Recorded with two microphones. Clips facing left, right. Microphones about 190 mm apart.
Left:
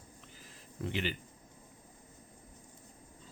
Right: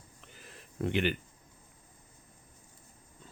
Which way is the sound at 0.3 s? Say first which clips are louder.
Right 6 dB; 65° right (ahead or behind).